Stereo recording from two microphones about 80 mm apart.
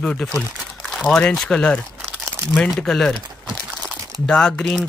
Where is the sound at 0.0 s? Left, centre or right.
Centre.